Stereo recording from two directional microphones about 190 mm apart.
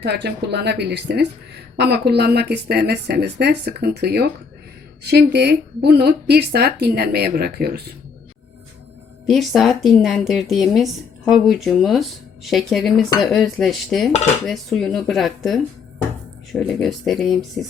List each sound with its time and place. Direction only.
0.0 s speech: 60° right (ahead or behind)
9.2 s a woman's voice: centre (ahead or behind)